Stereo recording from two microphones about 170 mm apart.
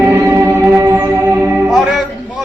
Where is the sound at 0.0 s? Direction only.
15° right (ahead or behind).